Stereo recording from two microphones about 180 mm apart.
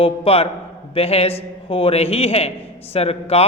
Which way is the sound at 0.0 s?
35° left (ahead or behind).